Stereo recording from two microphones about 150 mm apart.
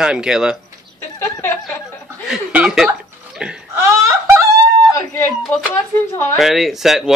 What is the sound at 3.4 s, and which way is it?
Wail, 5° right (ahead or behind).